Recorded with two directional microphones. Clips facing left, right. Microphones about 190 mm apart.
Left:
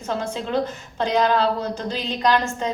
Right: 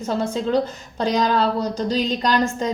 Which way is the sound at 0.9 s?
40° right (ahead or behind).